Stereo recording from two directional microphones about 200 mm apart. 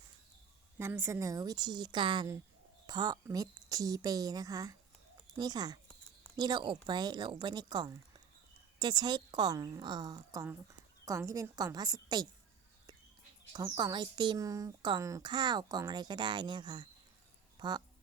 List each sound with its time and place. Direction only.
0.8 s a woman's voice: 10° right (ahead or behind)
13.5 s speech: 20° right (ahead or behind)